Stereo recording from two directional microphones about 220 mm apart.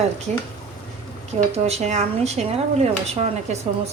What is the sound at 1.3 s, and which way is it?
Speech, 30° right (ahead or behind).